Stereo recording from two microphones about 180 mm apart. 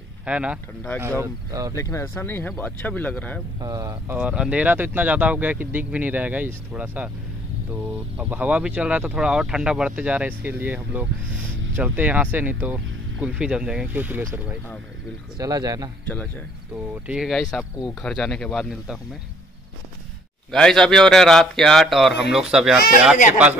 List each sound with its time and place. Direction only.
0.2 s speech: 5° right (ahead or behind)
1.8 s speech: 15° left (ahead or behind)
3.5 s speech: 20° right (ahead or behind)
4.2 s speech: 5° right (ahead or behind)
8.2 s speech: 10° right (ahead or behind)
15.3 s speech: 20° right (ahead or behind)
16.9 s a man's voice: 5° right (ahead or behind)
20.5 s a man's voice: 5° left (ahead or behind)